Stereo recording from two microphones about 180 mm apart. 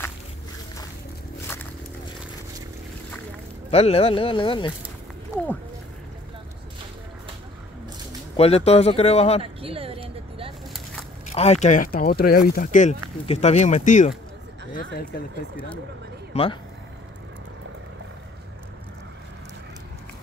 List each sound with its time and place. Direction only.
3.7 s speech: 35° left (ahead or behind)
8.4 s speech: 35° left (ahead or behind)
9.4 s a sound: 30° right (ahead or behind)
11.3 s speech: 35° left (ahead or behind)
14.7 s speech: 55° left (ahead or behind)